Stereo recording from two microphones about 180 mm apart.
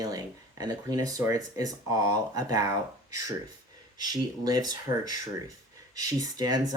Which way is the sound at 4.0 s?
20° right (ahead or behind).